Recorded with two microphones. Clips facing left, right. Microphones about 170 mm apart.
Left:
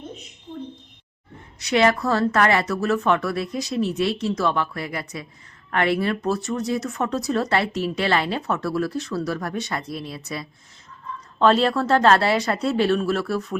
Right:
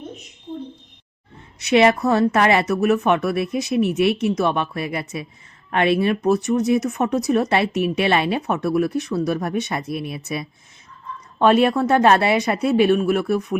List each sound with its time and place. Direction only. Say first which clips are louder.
1.6 s speech: right 4 dB; 20° right (ahead or behind)